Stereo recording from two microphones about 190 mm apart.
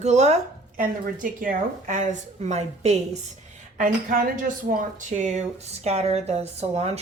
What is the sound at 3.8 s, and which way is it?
Speech, 45° right (ahead or behind).